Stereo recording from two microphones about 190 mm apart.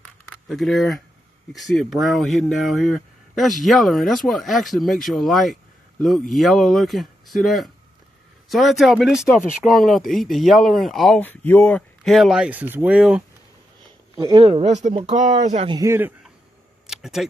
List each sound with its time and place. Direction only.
0.0 s a sound: 5° left (ahead or behind)
1.5 s speech: centre (ahead or behind)
14.1 s speech: 20° right (ahead or behind)
14.4 s speech: 35° right (ahead or behind)
15.7 s a man's voice: 15° right (ahead or behind)
16.8 s a sound: centre (ahead or behind)